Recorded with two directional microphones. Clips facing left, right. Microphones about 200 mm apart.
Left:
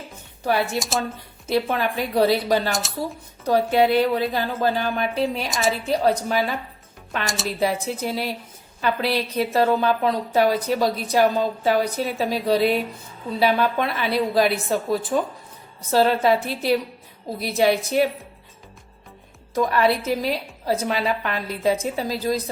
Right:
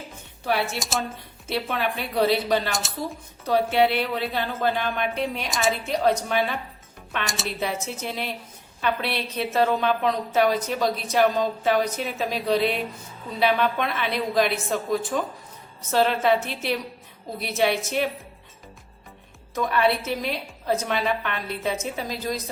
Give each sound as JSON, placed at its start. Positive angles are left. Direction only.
{"t": 0.8, "sound": "speech", "side_deg": 0}
{"t": 1.7, "sound": "a woman's voice", "side_deg": 40}
{"t": 2.7, "sound": "speech", "side_deg": 0}
{"t": 3.5, "sound": "a woman's voice", "side_deg": 40}
{"t": 7.3, "sound": "speech", "side_deg": 0}
{"t": 7.6, "sound": "a woman's voice", "side_deg": 35}
{"t": 19.5, "sound": "a woman's voice", "side_deg": 35}